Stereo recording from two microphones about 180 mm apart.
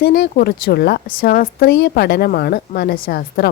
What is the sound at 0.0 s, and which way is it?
A woman's voice, 55° left (ahead or behind).